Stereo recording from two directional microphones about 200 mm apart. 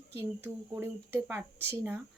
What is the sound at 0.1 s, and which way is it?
Speech, 10° right (ahead or behind).